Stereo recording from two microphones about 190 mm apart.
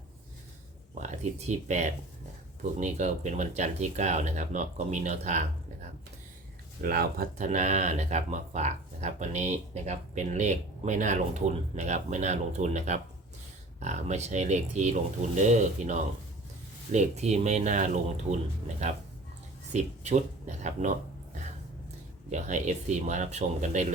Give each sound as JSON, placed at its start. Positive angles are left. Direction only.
{"t": 0.9, "sound": "speech", "side_deg": -40}
{"t": 6.8, "sound": "speech", "side_deg": -50}
{"t": 22.3, "sound": "speech", "side_deg": -40}